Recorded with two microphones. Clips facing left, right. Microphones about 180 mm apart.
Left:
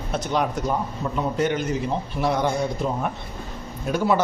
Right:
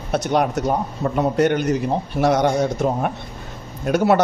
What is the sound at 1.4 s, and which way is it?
Speech, 65° right (ahead or behind).